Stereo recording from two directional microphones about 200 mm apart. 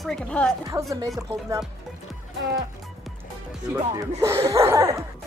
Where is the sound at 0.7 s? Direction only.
15° right (ahead or behind).